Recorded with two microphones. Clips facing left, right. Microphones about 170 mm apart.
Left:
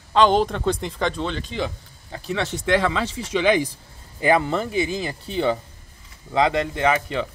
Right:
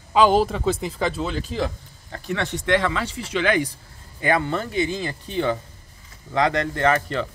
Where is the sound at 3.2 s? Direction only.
25° left (ahead or behind).